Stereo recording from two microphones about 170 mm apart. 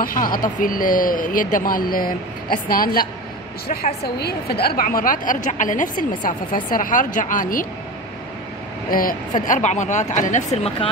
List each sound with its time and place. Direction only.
0.0 s speech: 55° left (ahead or behind)
4.0 s a woman's voice: 70° left (ahead or behind); by 7.6 s 55° left (ahead or behind)
8.9 s speech: 55° left (ahead or behind)
9.5 s a woman's voice: 45° left (ahead or behind)